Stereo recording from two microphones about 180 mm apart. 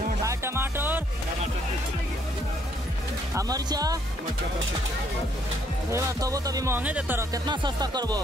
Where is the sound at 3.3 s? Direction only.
20° right (ahead or behind).